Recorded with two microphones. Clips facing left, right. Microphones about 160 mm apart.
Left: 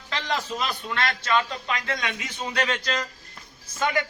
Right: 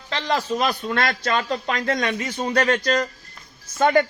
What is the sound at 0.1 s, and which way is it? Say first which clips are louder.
A man's voice: right 5 dB; 35° right (ahead or behind).